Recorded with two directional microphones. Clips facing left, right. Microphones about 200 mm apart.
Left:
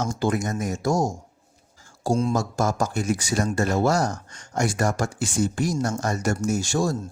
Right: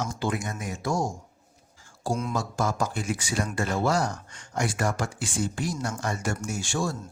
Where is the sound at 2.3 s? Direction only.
45° left (ahead or behind).